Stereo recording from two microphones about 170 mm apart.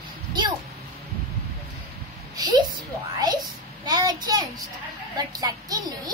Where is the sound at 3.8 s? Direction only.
25° right (ahead or behind).